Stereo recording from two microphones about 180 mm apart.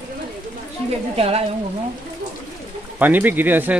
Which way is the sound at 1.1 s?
35° right (ahead or behind).